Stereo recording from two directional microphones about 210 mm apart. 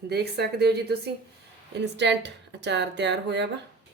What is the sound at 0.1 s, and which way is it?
Speech, 50° right (ahead or behind).